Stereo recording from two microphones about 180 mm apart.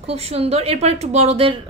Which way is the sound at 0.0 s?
35° right (ahead or behind).